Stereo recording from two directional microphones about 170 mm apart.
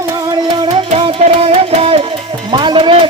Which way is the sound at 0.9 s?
35° right (ahead or behind).